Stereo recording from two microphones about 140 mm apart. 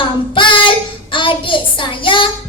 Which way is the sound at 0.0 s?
35° left (ahead or behind).